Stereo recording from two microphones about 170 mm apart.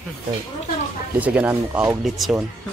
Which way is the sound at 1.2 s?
10° right (ahead or behind).